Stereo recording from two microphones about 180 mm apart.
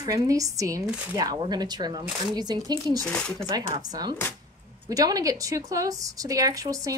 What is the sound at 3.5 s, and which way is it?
A woman's voice, 20° right (ahead or behind).